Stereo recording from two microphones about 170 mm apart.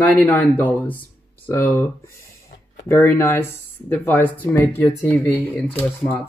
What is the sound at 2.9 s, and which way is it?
Speech, 15° left (ahead or behind).